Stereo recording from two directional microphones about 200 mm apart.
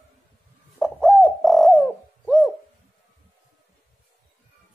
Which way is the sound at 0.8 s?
Centre (ahead or behind).